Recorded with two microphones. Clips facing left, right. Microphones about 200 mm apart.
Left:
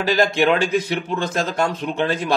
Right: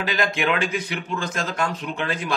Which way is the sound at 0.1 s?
35° left (ahead or behind).